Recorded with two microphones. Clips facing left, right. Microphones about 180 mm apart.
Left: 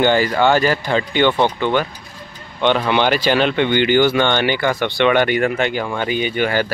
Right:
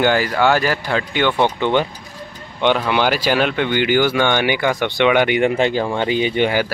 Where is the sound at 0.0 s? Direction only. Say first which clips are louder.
Left 1 dB; 5° right (ahead or behind).